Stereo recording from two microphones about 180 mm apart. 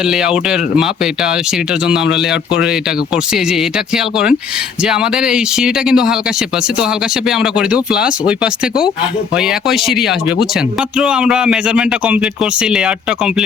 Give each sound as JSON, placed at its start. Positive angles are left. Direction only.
{"t": 0.1, "sound": "speech", "side_deg": -5}
{"t": 3.3, "sound": "speech", "side_deg": -5}
{"t": 7.3, "sound": "speech", "side_deg": -5}